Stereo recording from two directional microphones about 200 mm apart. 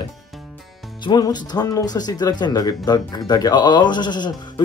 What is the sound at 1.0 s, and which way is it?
Speech, 20° left (ahead or behind).